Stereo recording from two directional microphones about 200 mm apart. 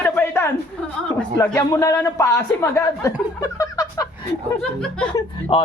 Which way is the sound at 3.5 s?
15° left (ahead or behind).